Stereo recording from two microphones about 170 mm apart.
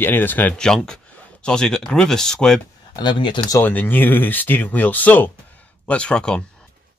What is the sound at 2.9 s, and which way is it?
Speech, 25° left (ahead or behind).